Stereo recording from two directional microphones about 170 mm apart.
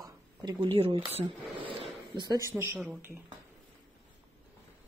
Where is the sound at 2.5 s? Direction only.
10° right (ahead or behind).